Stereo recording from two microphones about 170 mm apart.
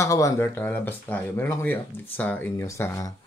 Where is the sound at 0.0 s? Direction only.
20° left (ahead or behind).